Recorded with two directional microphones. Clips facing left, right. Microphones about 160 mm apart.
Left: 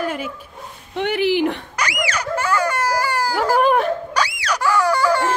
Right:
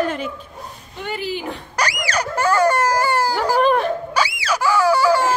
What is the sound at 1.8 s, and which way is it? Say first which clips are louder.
Screaming: right 1 dB; 35° right (ahead or behind).